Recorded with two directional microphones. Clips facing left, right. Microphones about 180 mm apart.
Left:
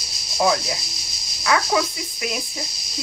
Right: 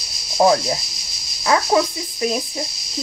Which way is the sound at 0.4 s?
35° right (ahead or behind).